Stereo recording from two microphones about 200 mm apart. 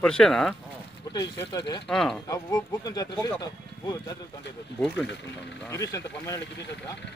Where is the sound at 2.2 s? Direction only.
15° left (ahead or behind).